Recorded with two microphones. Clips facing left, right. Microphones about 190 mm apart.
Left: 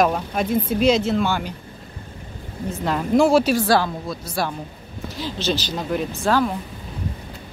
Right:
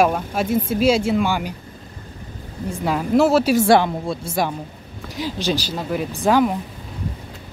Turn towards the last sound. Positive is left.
turn(degrees=-15)  # may be behind; listen again after turning